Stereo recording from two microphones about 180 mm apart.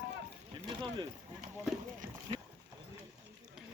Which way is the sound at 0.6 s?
25° right (ahead or behind).